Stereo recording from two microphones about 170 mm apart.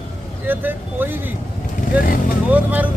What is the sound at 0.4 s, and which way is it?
Speech, 10° right (ahead or behind).